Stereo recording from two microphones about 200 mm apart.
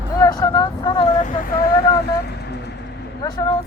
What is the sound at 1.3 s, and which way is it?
Speech, 45° left (ahead or behind).